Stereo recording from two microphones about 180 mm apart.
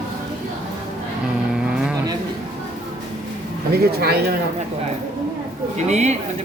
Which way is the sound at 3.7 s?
60° right (ahead or behind).